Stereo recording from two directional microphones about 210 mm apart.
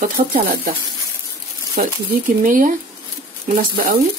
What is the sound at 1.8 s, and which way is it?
Speech, 35° right (ahead or behind).